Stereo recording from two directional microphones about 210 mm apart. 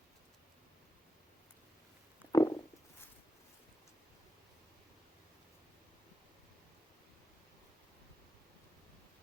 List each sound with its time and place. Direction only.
2.3 s stomach rumble: 15° left (ahead or behind)